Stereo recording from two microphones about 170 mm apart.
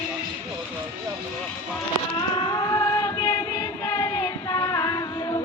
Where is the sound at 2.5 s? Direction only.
20° left (ahead or behind).